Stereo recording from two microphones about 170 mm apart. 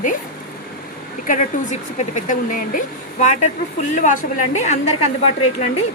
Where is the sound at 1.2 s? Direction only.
45° left (ahead or behind).